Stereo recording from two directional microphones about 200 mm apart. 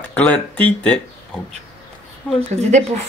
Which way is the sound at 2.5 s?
35° right (ahead or behind).